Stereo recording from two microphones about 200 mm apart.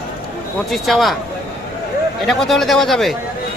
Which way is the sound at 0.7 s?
Centre (ahead or behind).